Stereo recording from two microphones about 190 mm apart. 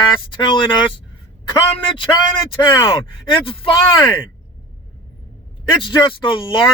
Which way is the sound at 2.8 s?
25° left (ahead or behind).